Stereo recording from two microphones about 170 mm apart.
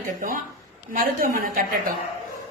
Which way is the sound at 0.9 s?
50° right (ahead or behind).